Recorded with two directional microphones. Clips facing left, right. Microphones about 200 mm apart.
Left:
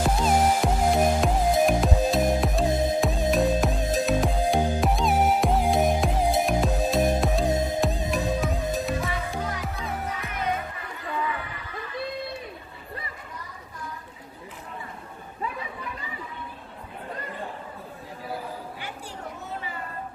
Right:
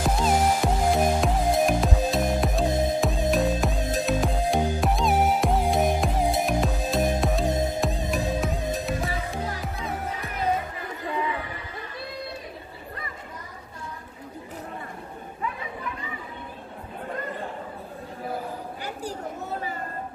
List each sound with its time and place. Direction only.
0.2 s music: centre (ahead or behind)
18.8 s chatter: 40° right (ahead or behind)